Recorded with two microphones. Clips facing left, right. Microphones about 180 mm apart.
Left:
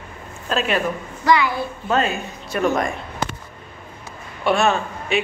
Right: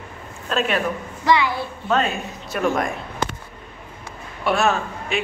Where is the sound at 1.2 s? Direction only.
25° right (ahead or behind).